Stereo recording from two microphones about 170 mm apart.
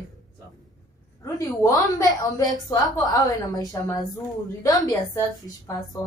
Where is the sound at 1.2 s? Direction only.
20° left (ahead or behind).